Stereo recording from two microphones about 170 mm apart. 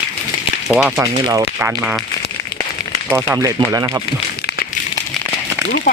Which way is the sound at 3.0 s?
10° right (ahead or behind).